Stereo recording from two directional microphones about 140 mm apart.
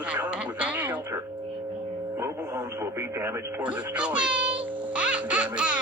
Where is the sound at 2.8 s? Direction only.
15° right (ahead or behind).